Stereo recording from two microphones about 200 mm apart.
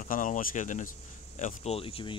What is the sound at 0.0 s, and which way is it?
Speech, 40° left (ahead or behind).